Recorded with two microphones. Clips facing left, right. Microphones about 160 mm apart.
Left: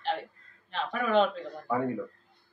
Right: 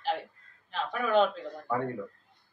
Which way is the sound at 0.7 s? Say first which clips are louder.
Even; centre (ahead or behind).